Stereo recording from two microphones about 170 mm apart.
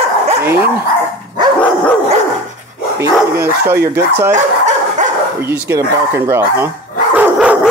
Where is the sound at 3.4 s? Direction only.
15° right (ahead or behind).